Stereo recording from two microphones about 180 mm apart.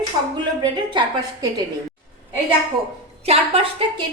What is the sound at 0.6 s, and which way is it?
A woman's voice, 25° right (ahead or behind).